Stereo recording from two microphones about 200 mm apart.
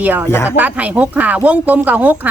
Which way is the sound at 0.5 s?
5° right (ahead or behind).